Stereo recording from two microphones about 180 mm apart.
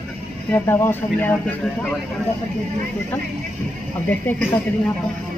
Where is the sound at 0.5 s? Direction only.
15° left (ahead or behind).